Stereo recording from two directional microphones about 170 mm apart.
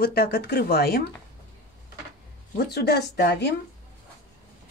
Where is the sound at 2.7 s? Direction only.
70° left (ahead or behind).